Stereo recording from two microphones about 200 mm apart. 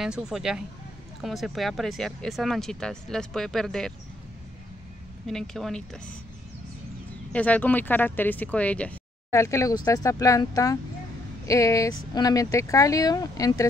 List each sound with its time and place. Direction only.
0.0 s speech: 5° right (ahead or behind)
5.2 s speech: centre (ahead or behind)
7.3 s speech: 5° left (ahead or behind)